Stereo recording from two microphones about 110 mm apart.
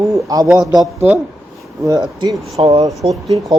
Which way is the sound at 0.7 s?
35° right (ahead or behind).